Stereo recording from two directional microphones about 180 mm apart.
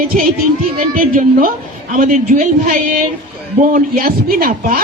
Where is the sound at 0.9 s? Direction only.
50° right (ahead or behind).